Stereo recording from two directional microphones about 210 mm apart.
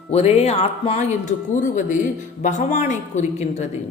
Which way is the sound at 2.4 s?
35° left (ahead or behind).